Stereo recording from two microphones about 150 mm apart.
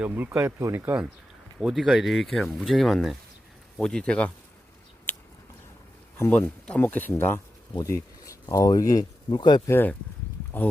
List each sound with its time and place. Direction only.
0.0 s speech: 10° right (ahead or behind)
1.5 s speech: centre (ahead or behind)
5.1 s a sound: 10° left (ahead or behind)
6.1 s speech: 15° left (ahead or behind); by 9.6 s 30° left (ahead or behind)
9.6 s speech: 15° left (ahead or behind)